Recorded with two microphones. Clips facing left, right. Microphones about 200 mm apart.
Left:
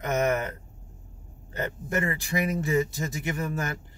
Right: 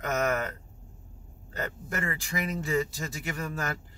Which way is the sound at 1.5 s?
20° left (ahead or behind).